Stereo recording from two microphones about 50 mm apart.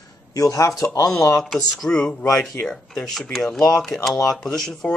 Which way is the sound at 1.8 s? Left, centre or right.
Left.